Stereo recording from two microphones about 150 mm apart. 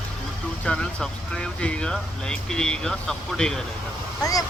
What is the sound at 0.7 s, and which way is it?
Speech, 10° left (ahead or behind).